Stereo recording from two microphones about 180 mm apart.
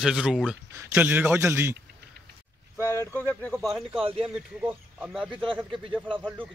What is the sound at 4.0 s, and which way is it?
Speech, 30° right (ahead or behind).